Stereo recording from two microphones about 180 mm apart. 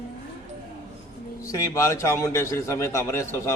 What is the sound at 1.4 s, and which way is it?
A man's voice, 15° left (ahead or behind).